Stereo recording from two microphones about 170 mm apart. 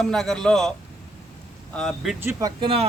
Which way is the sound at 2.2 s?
20° right (ahead or behind).